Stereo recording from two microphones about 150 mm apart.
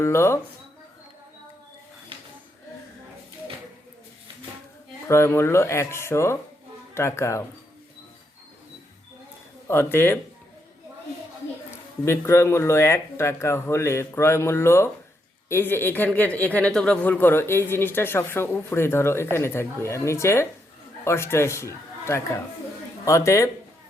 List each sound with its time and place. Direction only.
0.0 s speech: 20° left (ahead or behind)
5.0 s speech: 15° left (ahead or behind)
9.6 s speech: 15° left (ahead or behind)
11.7 s a man's voice: 15° left (ahead or behind)